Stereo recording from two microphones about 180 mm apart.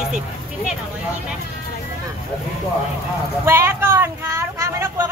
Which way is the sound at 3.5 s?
15° right (ahead or behind).